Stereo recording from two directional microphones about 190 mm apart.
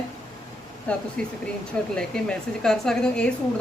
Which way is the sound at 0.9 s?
5° left (ahead or behind).